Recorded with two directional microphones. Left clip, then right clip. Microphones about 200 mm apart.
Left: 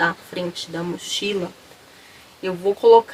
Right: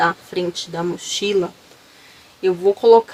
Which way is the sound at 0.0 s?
50° right (ahead or behind).